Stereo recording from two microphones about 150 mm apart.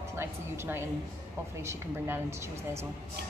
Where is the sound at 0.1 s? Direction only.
15° right (ahead or behind).